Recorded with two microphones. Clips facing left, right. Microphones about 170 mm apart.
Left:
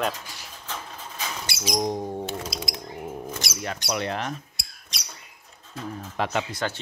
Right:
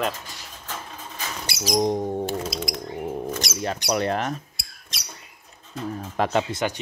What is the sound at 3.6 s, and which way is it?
Speech, 45° right (ahead or behind).